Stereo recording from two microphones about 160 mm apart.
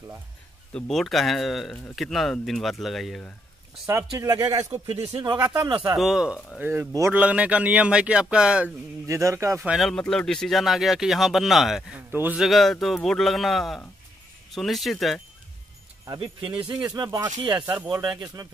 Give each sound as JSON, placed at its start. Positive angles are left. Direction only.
{"t": 0.7, "sound": "speech", "side_deg": 0}
{"t": 3.8, "sound": "speech", "side_deg": -20}
{"t": 5.9, "sound": "speech", "side_deg": -5}
{"t": 6.6, "sound": "speech", "side_deg": -15}
{"t": 9.0, "sound": "speech", "side_deg": -20}
{"t": 9.6, "sound": "speech", "side_deg": 0}
{"t": 12.1, "sound": "speech", "side_deg": -15}
{"t": 12.4, "sound": "speech", "side_deg": 0}
{"t": 16.1, "sound": "speech", "side_deg": -30}